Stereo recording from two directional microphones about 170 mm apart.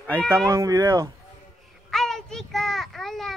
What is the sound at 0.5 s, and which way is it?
Speech, 20° right (ahead or behind).